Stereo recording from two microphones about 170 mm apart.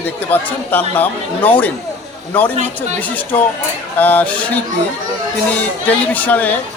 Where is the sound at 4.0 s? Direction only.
10° left (ahead or behind).